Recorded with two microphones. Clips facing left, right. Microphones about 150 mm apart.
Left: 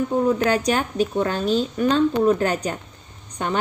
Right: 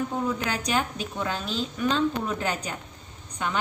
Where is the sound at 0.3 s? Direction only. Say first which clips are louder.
Left 9 dB; 45° left (ahead or behind).